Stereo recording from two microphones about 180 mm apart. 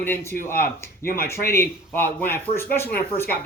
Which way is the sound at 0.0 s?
15° left (ahead or behind).